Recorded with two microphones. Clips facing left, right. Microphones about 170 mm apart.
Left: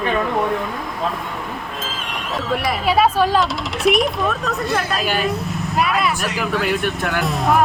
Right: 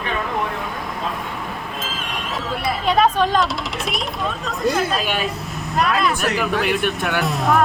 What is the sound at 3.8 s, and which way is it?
Speech, 80° left.